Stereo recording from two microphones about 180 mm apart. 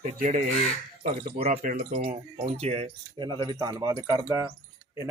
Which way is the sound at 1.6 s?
45° right (ahead or behind).